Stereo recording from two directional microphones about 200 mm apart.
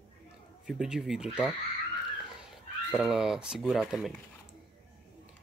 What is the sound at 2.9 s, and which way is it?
Speech, 5° right (ahead or behind).